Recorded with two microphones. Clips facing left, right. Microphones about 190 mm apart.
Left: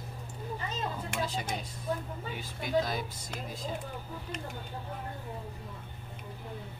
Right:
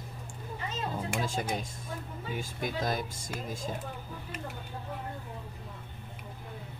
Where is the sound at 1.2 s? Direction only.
45° right (ahead or behind).